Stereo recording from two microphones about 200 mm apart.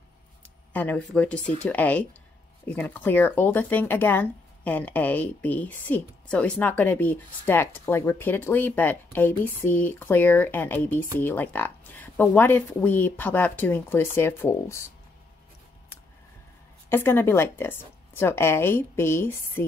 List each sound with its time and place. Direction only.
0.7 s speech: 10° left (ahead or behind)
16.9 s speech: 10° left (ahead or behind)